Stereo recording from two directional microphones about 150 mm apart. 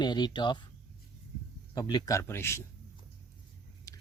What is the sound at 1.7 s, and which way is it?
Speech, 25° left (ahead or behind).